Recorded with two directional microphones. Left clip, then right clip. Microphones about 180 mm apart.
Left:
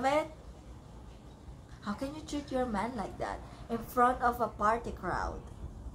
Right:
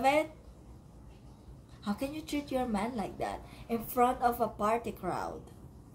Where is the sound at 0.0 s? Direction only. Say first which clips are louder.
Right 2 dB; 25° right (ahead or behind).